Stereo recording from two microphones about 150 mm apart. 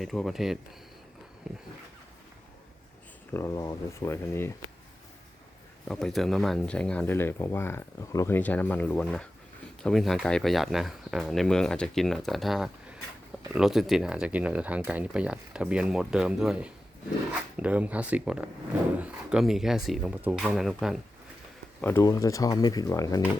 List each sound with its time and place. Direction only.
0.0 s speech: centre (ahead or behind)
3.3 s speech: 20° left (ahead or behind)
5.9 s speech: centre (ahead or behind)
21.8 s speech: 15° left (ahead or behind)